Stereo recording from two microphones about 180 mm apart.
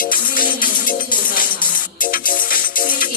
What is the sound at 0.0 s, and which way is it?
Music, 50° left (ahead or behind).